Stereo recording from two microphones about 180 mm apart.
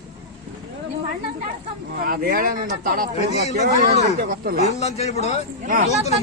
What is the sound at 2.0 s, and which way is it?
Speech, 55° right (ahead or behind).